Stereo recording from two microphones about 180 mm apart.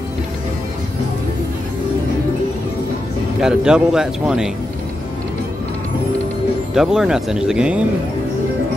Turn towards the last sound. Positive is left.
turn(degrees=-5)  # may be behind; listen again after turning